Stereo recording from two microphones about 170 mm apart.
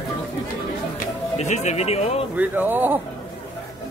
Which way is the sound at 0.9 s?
45° left (ahead or behind).